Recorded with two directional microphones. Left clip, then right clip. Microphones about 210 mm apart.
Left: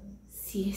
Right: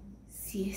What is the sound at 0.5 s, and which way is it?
Speech, 20° right (ahead or behind).